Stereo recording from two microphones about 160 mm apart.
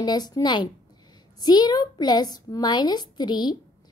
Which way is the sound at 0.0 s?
25° left (ahead or behind).